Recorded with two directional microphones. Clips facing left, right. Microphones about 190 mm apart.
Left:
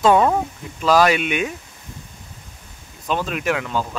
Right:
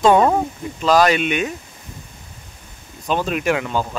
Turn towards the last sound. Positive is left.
turn(degrees=0)  # may be behind; listen again after turning